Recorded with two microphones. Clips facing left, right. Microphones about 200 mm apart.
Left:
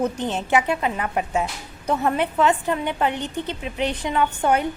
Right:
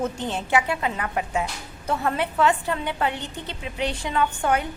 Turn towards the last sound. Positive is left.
turn(degrees=20)  # may be behind; listen again after turning